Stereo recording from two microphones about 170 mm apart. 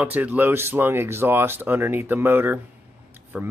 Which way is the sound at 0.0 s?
10° right (ahead or behind).